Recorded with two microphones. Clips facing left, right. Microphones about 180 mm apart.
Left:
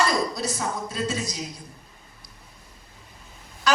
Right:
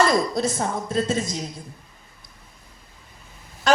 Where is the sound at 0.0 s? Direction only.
50° right (ahead or behind).